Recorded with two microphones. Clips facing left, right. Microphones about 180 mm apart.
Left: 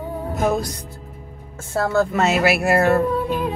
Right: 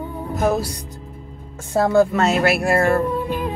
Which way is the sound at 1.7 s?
15° right (ahead or behind).